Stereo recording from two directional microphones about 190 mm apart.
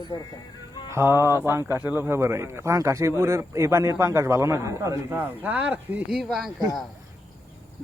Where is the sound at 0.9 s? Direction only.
15° right (ahead or behind).